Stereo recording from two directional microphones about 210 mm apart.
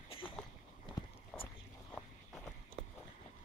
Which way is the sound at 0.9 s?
25° left (ahead or behind).